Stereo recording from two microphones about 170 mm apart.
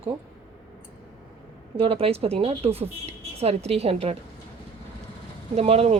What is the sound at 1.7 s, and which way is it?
Speech, 35° right (ahead or behind).